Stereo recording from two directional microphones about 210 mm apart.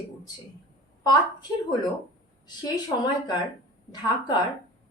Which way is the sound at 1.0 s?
20° left (ahead or behind).